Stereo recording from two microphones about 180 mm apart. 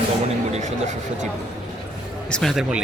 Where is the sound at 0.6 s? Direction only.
40° right (ahead or behind).